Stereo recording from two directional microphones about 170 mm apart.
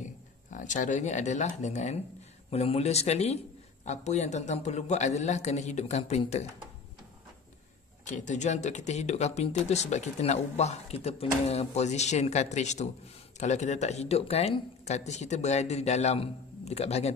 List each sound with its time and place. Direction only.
0.0 s a man's voice: 45° left (ahead or behind)
8.0 s speech: 45° left (ahead or behind)